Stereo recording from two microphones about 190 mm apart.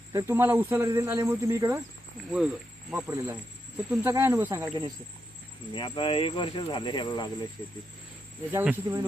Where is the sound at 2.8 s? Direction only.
10° right (ahead or behind).